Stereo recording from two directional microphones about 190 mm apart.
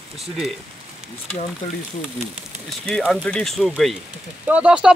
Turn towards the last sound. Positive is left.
turn(degrees=-5)  # may be behind; listen again after turning